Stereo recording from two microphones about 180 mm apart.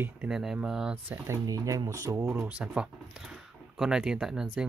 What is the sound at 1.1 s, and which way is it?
Speech, 15° right (ahead or behind).